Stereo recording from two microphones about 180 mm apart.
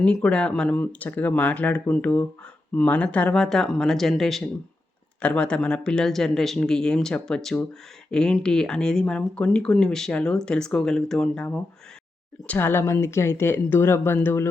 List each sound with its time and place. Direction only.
0.0 s speech: 5° left (ahead or behind)